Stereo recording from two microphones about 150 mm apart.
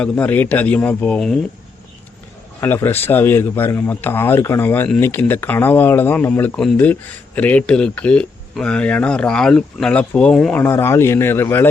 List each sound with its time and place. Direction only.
0.0 s speech: 10° left (ahead or behind)
2.6 s speech: 15° left (ahead or behind)
10.6 s speech: 15° left (ahead or behind)